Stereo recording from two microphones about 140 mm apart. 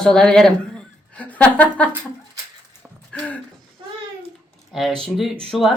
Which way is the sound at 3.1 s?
10° left (ahead or behind).